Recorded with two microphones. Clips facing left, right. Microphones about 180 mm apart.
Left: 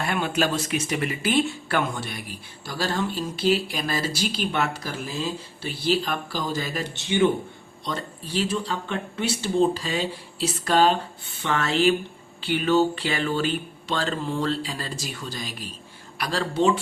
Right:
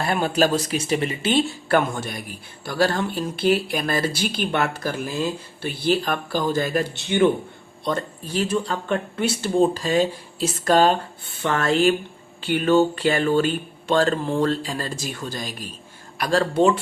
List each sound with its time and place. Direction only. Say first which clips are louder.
0.0 s speech: right 4 dB; 40° right (ahead or behind)
1.6 s speech: right 5 dB; 45° right (ahead or behind)
2.6 s speech: right 5 dB; 55° right (ahead or behind)